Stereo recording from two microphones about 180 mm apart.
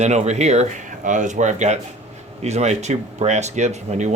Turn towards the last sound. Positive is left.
turn(degrees=-40)  # may be behind; listen again after turning